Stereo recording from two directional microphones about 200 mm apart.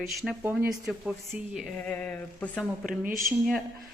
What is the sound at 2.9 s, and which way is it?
Speech, 40° right (ahead or behind).